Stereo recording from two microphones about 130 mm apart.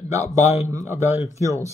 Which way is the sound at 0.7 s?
25° right (ahead or behind).